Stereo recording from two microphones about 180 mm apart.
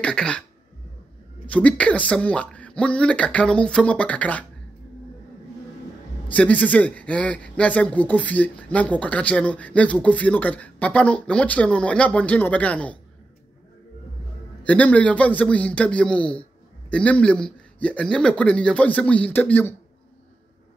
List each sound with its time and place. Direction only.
0.0 s speech: 5° left (ahead or behind)
1.5 s speech: 5° left (ahead or behind)
6.2 s speech: 10° left (ahead or behind)
14.7 s speech: 10° left (ahead or behind)